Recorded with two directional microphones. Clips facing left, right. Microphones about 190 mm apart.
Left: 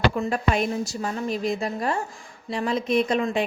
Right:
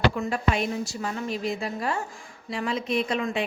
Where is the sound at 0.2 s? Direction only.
45° left (ahead or behind).